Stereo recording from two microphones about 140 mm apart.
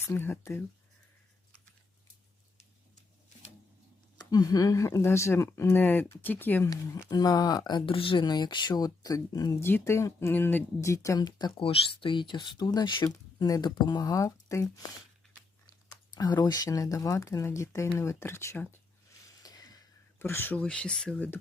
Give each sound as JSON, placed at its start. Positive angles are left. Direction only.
{"t": 0.0, "sound": "speech", "side_deg": 15}
{"t": 4.2, "sound": "speech", "side_deg": 25}
{"t": 6.7, "sound": "speech", "side_deg": 25}
{"t": 11.5, "sound": "speech", "side_deg": 40}
{"t": 16.1, "sound": "speech", "side_deg": 30}
{"t": 19.4, "sound": "a sound", "side_deg": 25}
{"t": 20.1, "sound": "speech", "side_deg": 15}